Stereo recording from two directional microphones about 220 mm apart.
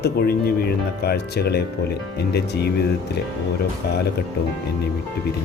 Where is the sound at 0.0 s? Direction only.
45° left (ahead or behind).